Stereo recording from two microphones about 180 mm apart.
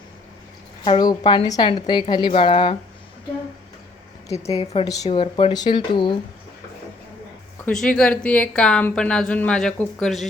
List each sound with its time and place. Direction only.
0.9 s a woman's voice: 25° left (ahead or behind)
4.4 s a woman's voice: 35° left (ahead or behind)
7.6 s a woman's voice: 5° left (ahead or behind)